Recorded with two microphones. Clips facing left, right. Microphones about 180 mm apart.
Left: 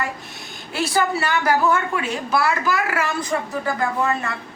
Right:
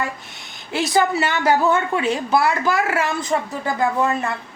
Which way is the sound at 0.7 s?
20° right (ahead or behind).